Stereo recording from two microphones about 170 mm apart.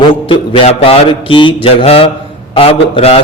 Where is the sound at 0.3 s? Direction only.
35° left (ahead or behind).